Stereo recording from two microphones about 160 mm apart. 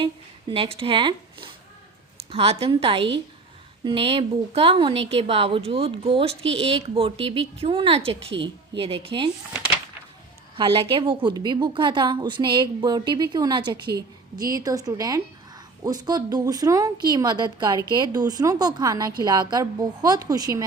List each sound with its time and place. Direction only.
0.0 s a woman's voice: 35° right (ahead or behind)
10.6 s a woman's voice: 35° right (ahead or behind)